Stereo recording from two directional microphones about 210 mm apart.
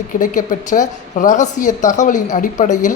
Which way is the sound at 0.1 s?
40° left (ahead or behind).